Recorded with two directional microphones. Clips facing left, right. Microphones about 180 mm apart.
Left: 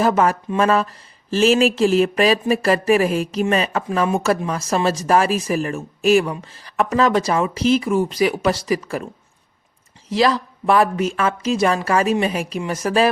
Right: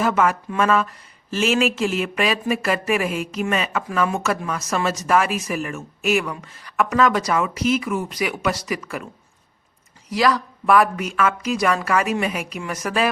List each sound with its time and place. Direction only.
0.0 s speech: 35° left (ahead or behind)
10.1 s speech: 25° left (ahead or behind)